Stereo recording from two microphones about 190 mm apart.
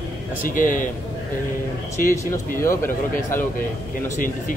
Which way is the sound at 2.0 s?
45° left (ahead or behind).